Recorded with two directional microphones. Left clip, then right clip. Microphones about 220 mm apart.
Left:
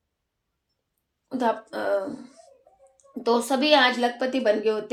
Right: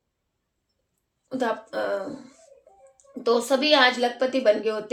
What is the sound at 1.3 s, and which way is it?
Speech, 25° left (ahead or behind).